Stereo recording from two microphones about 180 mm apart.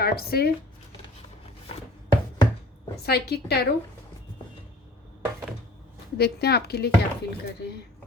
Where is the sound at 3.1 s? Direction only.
65° left (ahead or behind).